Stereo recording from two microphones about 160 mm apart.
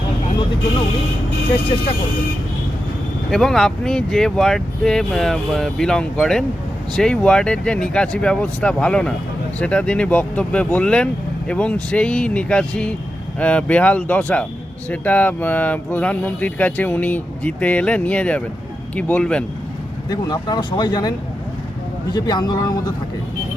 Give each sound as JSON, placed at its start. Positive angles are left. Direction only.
{"t": 3.2, "sound": "speech", "side_deg": 0}
{"t": 20.1, "sound": "speech", "side_deg": 25}
{"t": 22.1, "sound": "speech", "side_deg": 25}